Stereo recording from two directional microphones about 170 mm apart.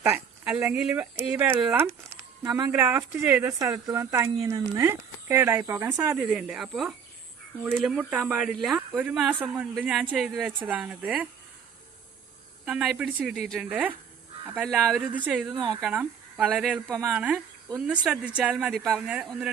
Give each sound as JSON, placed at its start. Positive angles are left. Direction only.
{"t": 0.0, "sound": "speech", "side_deg": -5}
{"t": 1.9, "sound": "a sound", "side_deg": 5}
{"t": 2.4, "sound": "speech", "side_deg": -20}
{"t": 6.1, "sound": "speech", "side_deg": 0}
{"t": 12.6, "sound": "speech", "side_deg": -5}
{"t": 15.5, "sound": "a woman's voice", "side_deg": -25}
{"t": 15.8, "sound": "speech", "side_deg": -10}